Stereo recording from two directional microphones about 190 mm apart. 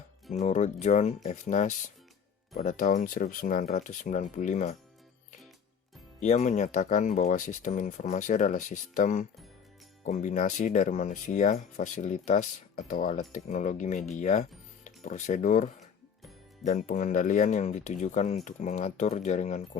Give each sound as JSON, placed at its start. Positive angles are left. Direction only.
{"t": 0.3, "sound": "speech", "side_deg": 40}
{"t": 6.1, "sound": "speech", "side_deg": 40}